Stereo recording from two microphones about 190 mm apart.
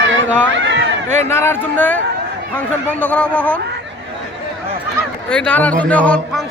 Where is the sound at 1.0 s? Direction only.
35° right (ahead or behind).